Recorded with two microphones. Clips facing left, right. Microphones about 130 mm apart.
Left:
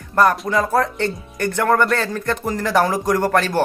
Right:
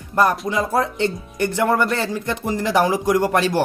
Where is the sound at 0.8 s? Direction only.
15° right (ahead or behind).